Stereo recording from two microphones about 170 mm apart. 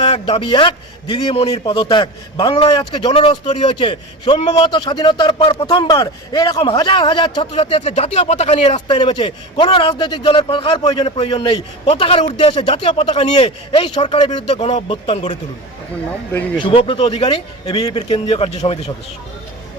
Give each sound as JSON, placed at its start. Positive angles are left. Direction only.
{"t": 0.0, "sound": "a man's voice", "side_deg": 30}
{"t": 16.6, "sound": "a man's voice", "side_deg": 30}